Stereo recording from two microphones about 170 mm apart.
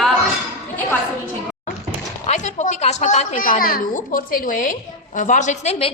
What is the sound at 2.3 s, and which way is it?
A woman's voice, 45° left (ahead or behind).